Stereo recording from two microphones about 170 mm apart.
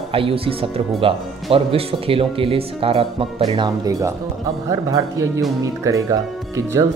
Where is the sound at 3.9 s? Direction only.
20° right (ahead or behind).